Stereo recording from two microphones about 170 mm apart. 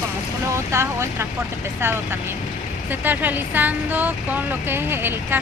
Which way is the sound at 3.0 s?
10° right (ahead or behind).